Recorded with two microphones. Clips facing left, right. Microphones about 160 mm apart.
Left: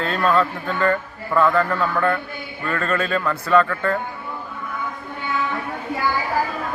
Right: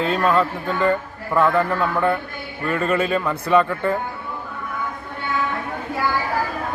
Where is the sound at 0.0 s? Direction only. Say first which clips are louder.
Right 1 dB; 10° right (ahead or behind).